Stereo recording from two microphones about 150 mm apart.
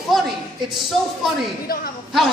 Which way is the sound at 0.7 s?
Centre (ahead or behind).